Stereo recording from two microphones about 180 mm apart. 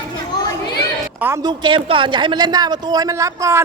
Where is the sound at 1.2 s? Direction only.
15° right (ahead or behind).